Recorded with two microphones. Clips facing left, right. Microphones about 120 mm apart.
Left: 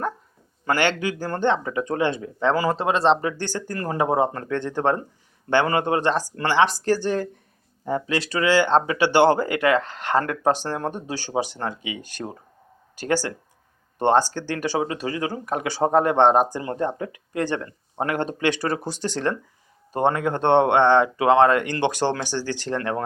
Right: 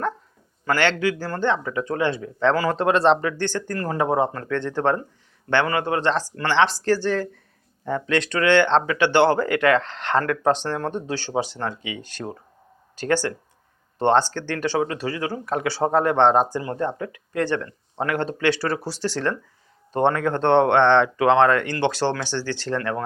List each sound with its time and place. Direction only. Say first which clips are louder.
0.6 s speech: right 1 dB; 20° left (ahead or behind)
2.7 s speech: right 2 dB; centre (ahead or behind)
3.3 s speech: right 3 dB; 15° left (ahead or behind)
6.0 s speech: even; 15° left (ahead or behind)